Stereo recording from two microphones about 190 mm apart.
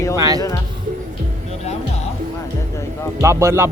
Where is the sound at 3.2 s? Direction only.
15° right (ahead or behind).